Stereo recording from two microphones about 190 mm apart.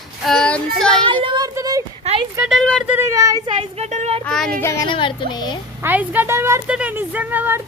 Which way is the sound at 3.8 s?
35° right (ahead or behind).